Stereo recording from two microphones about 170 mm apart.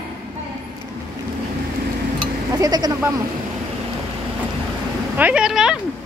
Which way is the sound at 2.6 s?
20° right (ahead or behind).